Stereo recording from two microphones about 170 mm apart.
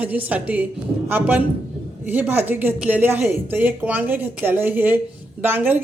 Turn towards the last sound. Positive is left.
turn(degrees=-10)  # may be behind; listen again after turning